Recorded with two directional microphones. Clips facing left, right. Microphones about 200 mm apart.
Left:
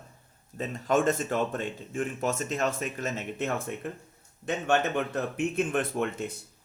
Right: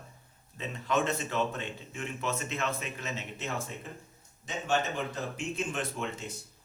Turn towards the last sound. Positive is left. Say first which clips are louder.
# left 7 dB
turn(degrees=55)  # may be behind; listen again after turning